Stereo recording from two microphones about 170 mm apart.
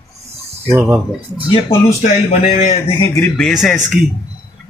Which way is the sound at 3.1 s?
5° left (ahead or behind).